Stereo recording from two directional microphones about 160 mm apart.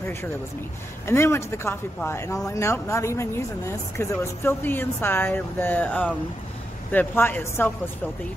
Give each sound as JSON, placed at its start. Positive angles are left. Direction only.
{"t": 1.0, "sound": "speech", "side_deg": 15}